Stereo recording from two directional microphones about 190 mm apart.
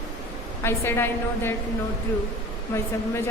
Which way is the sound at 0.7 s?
15° left (ahead or behind).